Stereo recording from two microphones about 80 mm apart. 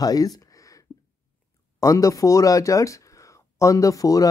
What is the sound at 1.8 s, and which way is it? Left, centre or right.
Speech, left.